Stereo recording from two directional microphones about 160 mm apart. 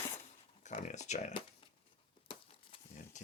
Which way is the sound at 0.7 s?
50° left (ahead or behind).